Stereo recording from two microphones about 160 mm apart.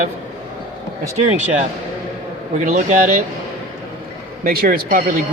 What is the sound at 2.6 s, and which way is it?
Speech, 50° right (ahead or behind).